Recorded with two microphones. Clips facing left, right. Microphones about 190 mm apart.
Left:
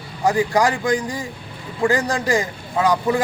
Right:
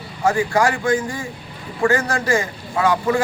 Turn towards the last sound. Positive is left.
turn(degrees=20)  # may be behind; listen again after turning